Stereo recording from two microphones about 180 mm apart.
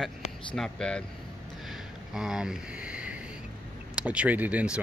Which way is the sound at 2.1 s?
5° right (ahead or behind).